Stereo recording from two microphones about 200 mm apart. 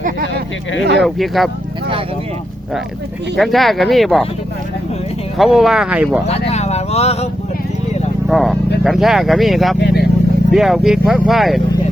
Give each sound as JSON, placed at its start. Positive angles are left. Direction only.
{"t": 0.0, "sound": "a sound", "side_deg": -50}
{"t": 1.0, "sound": "speech", "side_deg": 0}
{"t": 3.3, "sound": "speech", "side_deg": 0}
{"t": 5.4, "sound": "speech", "side_deg": 0}
{"t": 6.5, "sound": "speech", "side_deg": 35}
{"t": 8.3, "sound": "speech", "side_deg": 0}
{"t": 9.8, "sound": "speech", "side_deg": 55}
{"t": 10.5, "sound": "speech", "side_deg": 0}